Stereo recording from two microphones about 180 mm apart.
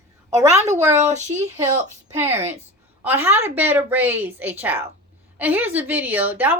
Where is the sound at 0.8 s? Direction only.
15° right (ahead or behind).